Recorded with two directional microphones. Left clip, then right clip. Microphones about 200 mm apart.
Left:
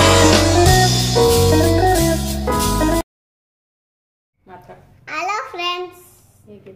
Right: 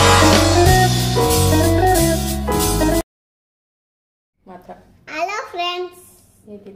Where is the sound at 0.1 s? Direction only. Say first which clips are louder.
Even; centre (ahead or behind).